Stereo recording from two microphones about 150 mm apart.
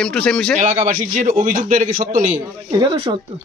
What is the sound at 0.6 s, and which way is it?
A man's voice, 55° right (ahead or behind).